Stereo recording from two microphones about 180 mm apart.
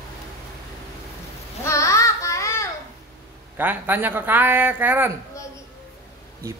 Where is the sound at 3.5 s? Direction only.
10° right (ahead or behind).